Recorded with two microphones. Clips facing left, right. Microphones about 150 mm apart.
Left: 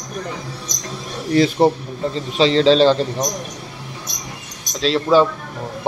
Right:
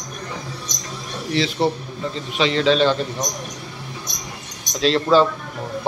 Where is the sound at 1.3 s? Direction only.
45° left (ahead or behind).